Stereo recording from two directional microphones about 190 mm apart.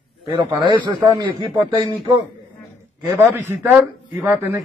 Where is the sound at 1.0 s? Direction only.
25° right (ahead or behind).